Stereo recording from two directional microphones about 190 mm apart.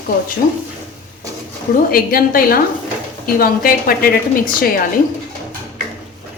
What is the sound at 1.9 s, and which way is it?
Speech, 50° left (ahead or behind).